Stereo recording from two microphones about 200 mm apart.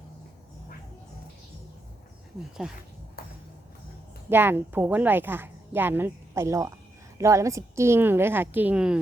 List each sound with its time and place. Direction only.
2.6 s speech: 5° right (ahead or behind)
3.2 s a sound: 50° left (ahead or behind)
4.3 s a woman's voice: 10° right (ahead or behind)